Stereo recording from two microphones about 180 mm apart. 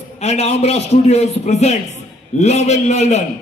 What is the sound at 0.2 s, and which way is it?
A man's voice, 35° left (ahead or behind).